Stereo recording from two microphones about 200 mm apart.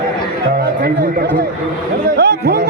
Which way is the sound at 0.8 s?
55° right (ahead or behind).